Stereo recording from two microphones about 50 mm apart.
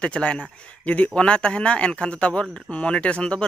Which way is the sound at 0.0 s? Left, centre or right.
Left.